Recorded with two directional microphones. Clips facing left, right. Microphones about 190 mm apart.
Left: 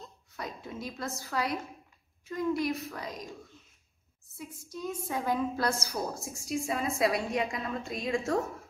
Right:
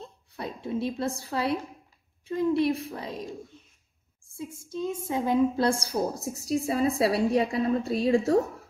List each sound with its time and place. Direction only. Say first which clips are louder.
0.0 s a woman's voice: right 4 dB; 30° right (ahead or behind)
4.4 s a woman's voice: right 7 dB; 25° right (ahead or behind)